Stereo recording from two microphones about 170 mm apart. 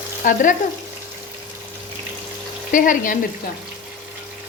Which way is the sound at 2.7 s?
50° left (ahead or behind).